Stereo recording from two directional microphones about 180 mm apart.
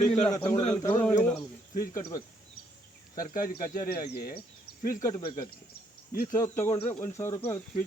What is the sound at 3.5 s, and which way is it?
Speech, 55° left (ahead or behind).